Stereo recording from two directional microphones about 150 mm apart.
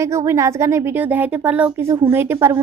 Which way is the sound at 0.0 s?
20° right (ahead or behind).